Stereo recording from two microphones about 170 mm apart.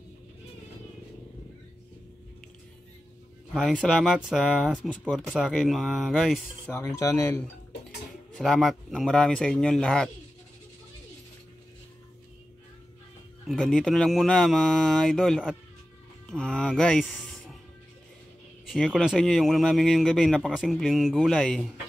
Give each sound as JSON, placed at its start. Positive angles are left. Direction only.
{"t": 3.5, "sound": "a man's voice", "side_deg": 0}
{"t": 6.8, "sound": "speech", "side_deg": 20}
{"t": 8.4, "sound": "a man's voice", "side_deg": 0}
{"t": 13.5, "sound": "a man's voice", "side_deg": 5}
{"t": 18.7, "sound": "a man's voice", "side_deg": 0}